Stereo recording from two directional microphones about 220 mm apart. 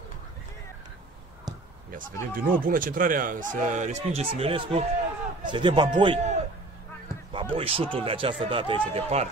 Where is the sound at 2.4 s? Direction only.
40° right (ahead or behind).